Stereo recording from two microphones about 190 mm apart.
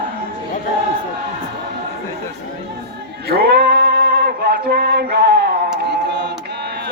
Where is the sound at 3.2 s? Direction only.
60° right (ahead or behind).